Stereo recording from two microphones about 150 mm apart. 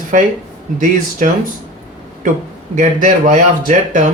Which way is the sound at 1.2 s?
60° right (ahead or behind).